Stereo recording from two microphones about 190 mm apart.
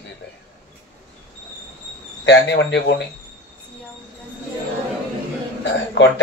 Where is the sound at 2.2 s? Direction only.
65° left (ahead or behind).